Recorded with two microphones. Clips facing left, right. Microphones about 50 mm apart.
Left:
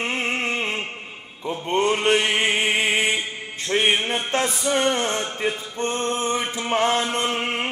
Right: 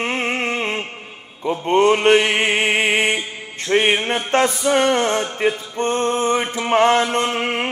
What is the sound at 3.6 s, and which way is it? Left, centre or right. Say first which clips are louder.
A man's voice: right 4 dB; right.